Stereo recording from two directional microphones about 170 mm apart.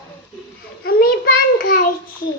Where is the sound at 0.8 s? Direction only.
60° left (ahead or behind).